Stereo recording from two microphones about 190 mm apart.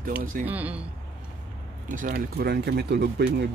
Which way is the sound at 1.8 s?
45° right (ahead or behind).